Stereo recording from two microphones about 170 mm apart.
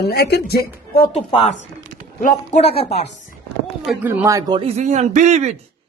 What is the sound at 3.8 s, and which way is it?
Speech, 10° right (ahead or behind).